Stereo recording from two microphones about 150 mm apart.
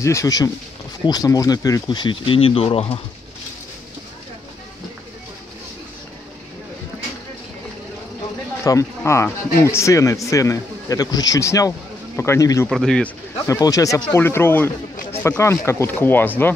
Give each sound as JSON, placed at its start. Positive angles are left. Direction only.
{"t": 0.0, "sound": "speech", "side_deg": 20}
{"t": 8.6, "sound": "speech", "side_deg": 20}
{"t": 12.6, "sound": "speech", "side_deg": 5}
{"t": 13.5, "sound": "speech", "side_deg": 25}